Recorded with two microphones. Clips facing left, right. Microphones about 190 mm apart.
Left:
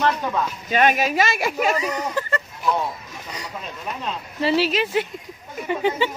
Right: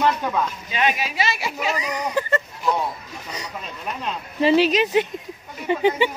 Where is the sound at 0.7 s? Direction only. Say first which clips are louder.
Left 5 dB; 50° left (ahead or behind).